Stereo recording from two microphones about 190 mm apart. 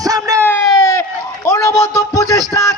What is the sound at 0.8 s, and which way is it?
Run, 15° left (ahead or behind).